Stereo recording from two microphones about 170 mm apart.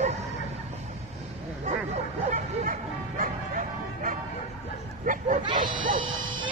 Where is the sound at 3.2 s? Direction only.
50° right (ahead or behind).